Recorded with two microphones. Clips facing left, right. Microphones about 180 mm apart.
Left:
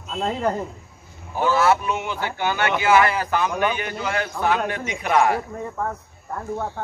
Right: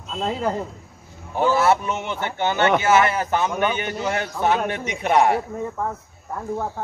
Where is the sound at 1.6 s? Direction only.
25° right (ahead or behind).